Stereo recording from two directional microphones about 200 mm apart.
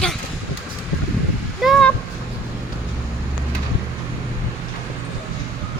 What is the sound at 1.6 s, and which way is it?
Honk, centre (ahead or behind).